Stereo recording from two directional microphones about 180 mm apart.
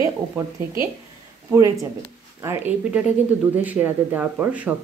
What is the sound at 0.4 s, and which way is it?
Speech, 10° right (ahead or behind).